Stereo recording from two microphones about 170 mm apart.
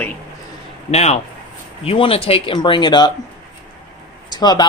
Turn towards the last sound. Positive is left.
turn(degrees=25)  # may be behind; listen again after turning